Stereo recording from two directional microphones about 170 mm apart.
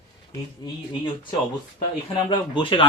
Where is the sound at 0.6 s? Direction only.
25° left (ahead or behind).